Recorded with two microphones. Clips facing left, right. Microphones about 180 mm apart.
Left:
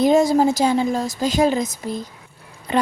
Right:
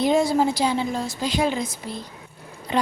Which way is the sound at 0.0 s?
45° left (ahead or behind).